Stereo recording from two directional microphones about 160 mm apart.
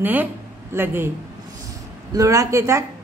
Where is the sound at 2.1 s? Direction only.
20° right (ahead or behind).